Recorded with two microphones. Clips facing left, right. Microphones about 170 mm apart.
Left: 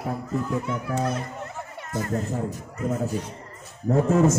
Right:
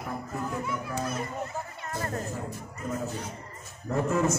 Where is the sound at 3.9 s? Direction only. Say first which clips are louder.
Left 7 dB; 50° left (ahead or behind).